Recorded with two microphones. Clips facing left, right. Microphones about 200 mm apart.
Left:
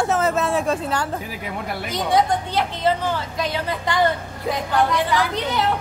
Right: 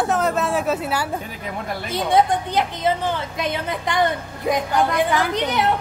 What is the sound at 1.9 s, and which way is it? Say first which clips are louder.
A woman's voice: right 2 dB; 25° right (ahead or behind).